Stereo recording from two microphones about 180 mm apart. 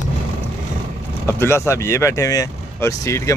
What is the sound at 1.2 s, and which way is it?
Speech, 15° left (ahead or behind).